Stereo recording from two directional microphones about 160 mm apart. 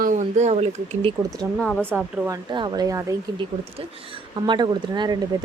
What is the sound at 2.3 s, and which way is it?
Speech, 30° right (ahead or behind).